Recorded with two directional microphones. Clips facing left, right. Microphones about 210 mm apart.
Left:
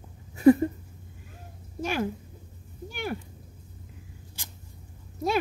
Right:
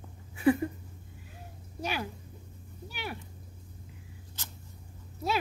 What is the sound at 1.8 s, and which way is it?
A woman's voice, 45° left (ahead or behind).